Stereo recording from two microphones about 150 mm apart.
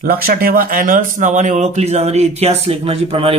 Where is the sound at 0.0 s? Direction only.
80° right.